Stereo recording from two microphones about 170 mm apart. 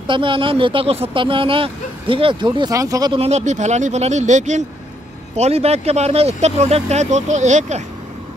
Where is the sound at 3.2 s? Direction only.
40° right (ahead or behind).